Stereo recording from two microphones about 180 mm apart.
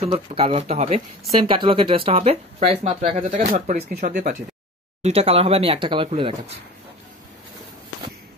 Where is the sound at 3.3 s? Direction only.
45° right (ahead or behind).